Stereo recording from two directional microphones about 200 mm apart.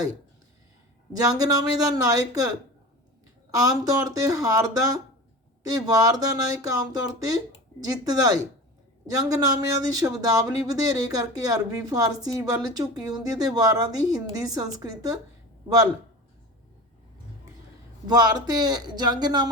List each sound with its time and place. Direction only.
1.1 s speech: 20° right (ahead or behind)
18.0 s speech: 20° right (ahead or behind)